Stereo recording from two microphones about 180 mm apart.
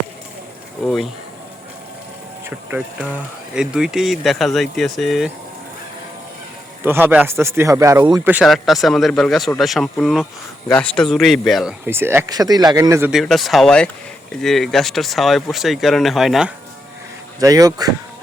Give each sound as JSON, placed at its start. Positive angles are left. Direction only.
{"t": 0.9, "sound": "speech", "side_deg": 0}
{"t": 2.4, "sound": "speech", "side_deg": -10}
{"t": 6.8, "sound": "speech", "side_deg": -10}
{"t": 8.3, "sound": "speech", "side_deg": -5}
{"t": 11.9, "sound": "speech", "side_deg": -15}
{"t": 13.1, "sound": "speech", "side_deg": 0}
{"t": 17.4, "sound": "speech", "side_deg": -20}